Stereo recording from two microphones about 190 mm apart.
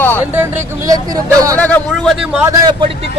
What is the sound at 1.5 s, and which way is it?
Speech, 10° left (ahead or behind).